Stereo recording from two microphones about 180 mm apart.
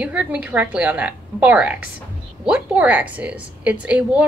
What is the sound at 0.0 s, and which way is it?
Speech, 5° right (ahead or behind).